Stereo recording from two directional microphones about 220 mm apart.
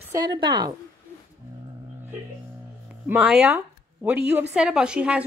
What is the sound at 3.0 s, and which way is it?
A woman's voice, 10° right (ahead or behind).